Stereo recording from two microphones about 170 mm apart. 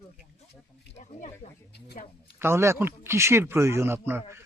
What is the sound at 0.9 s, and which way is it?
Speech, 45° left (ahead or behind).